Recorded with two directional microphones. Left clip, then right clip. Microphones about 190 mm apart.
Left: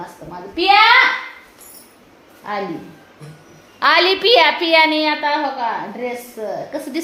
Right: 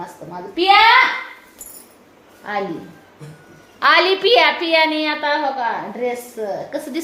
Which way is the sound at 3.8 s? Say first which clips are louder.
Even; 15° left (ahead or behind).